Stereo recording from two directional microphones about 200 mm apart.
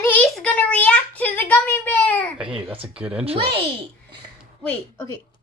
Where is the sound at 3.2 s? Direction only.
30° right (ahead or behind).